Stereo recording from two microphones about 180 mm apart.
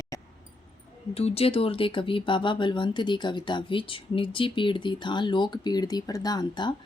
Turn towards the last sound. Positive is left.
turn(degrees=25)  # may be behind; listen again after turning